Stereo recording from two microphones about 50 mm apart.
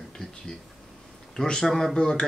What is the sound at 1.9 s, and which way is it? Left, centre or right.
Speech, centre.